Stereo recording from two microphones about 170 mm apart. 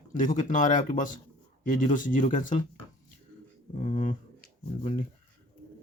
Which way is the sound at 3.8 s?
45° left (ahead or behind).